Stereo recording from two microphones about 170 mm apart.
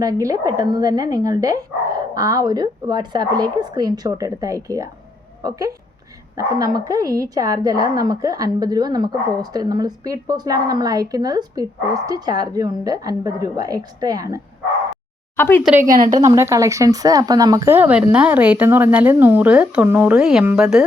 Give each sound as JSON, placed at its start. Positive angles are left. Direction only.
{"t": 0.0, "sound": "a woman's voice", "side_deg": -20}
{"t": 6.7, "sound": "a woman's voice", "side_deg": -20}
{"t": 15.4, "sound": "speech", "side_deg": 10}
{"t": 15.8, "sound": "a woman's voice", "side_deg": -50}
{"t": 16.1, "sound": "speech", "side_deg": -20}